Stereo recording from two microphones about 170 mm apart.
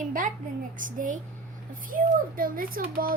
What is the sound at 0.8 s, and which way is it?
A woman's voice, 50° right (ahead or behind).